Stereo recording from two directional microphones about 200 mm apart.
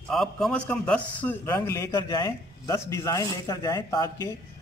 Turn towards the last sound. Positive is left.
turn(degrees=15)  # may be behind; listen again after turning